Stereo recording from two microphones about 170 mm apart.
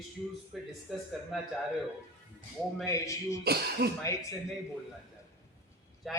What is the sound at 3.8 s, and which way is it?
Speech, 75° right (ahead or behind).